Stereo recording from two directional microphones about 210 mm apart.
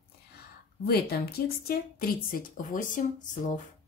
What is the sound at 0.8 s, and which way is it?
Speech, 50° left (ahead or behind).